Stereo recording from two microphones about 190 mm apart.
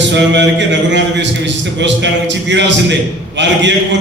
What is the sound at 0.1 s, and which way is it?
A man's voice, 70° right (ahead or behind).